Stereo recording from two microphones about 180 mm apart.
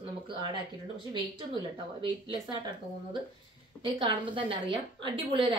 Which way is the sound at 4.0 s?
30° right (ahead or behind).